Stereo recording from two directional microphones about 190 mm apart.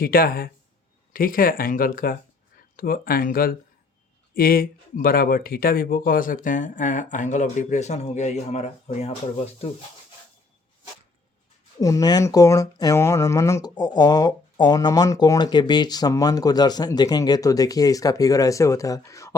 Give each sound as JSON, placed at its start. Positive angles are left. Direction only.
{"t": 0.0, "sound": "speech", "side_deg": 50}
{"t": 11.8, "sound": "speech", "side_deg": 20}